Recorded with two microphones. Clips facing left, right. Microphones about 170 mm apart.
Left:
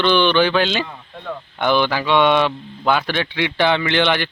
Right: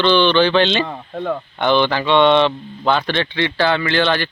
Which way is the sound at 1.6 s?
10° left (ahead or behind).